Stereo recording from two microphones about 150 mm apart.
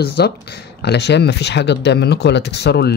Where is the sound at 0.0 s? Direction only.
90° left.